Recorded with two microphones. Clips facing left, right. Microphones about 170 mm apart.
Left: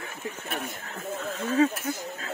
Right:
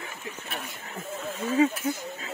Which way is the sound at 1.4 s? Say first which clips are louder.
Even; 10° right (ahead or behind).